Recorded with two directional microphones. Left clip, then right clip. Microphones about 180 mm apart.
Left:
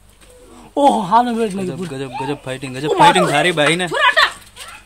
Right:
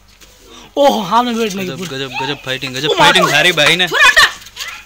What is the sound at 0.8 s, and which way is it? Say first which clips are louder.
A man's voice: right 1 dB; 15° left (ahead or behind).